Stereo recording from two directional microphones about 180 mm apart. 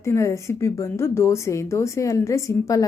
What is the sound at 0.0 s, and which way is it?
A woman's voice, 15° left (ahead or behind).